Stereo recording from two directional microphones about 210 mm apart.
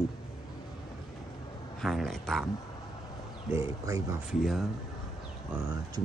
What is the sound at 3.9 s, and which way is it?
Speech, 15° right (ahead or behind).